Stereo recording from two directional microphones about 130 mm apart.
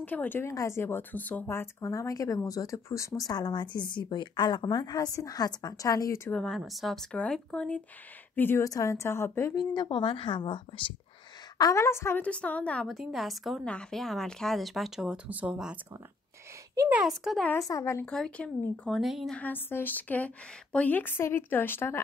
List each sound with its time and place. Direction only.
0.0 s speech: 15° left (ahead or behind)
6.3 s a woman's voice: 5° left (ahead or behind); by 9.5 s 20° left (ahead or behind)
9.6 s a woman's voice: 35° left (ahead or behind)
11.5 s a woman's voice: 25° left (ahead or behind); by 15.8 s 10° right (ahead or behind)
16.9 s a woman's voice: 5° right (ahead or behind)
17.5 s speech: 25° left (ahead or behind)
18.0 s a woman's voice: 5° left (ahead or behind)
19.3 s a woman's voice: 15° left (ahead or behind)